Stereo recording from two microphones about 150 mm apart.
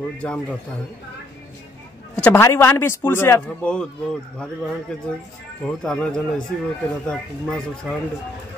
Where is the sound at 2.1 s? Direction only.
10° left (ahead or behind).